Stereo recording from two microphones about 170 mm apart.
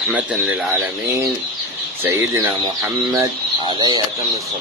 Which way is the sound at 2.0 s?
15° right (ahead or behind).